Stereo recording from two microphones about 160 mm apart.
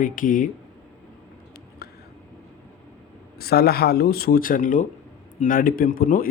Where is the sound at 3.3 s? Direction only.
75° left (ahead or behind).